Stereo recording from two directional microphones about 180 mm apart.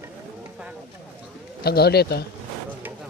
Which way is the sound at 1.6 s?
60° left (ahead or behind).